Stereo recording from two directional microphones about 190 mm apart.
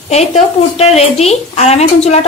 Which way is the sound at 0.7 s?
35° left (ahead or behind).